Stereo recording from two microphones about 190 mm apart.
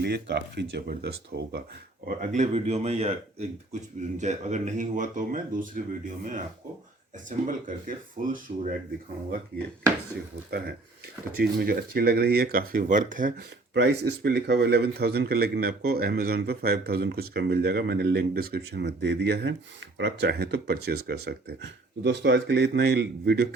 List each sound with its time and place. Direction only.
0.0 s speech: 60° right (ahead or behind)
2.0 s speech: 40° right (ahead or behind)
7.3 s speech: 45° right (ahead or behind)
11.3 s speech: 55° right (ahead or behind)
13.7 s speech: 60° right (ahead or behind)